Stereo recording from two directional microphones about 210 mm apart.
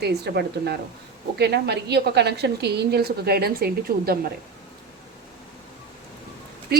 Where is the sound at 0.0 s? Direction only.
50° right (ahead or behind).